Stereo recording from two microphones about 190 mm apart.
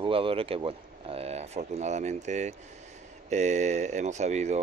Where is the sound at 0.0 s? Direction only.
30° right (ahead or behind).